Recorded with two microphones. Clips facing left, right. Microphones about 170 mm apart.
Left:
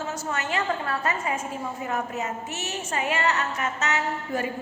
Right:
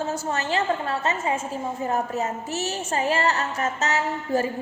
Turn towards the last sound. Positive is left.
turn(degrees=-35)  # may be behind; listen again after turning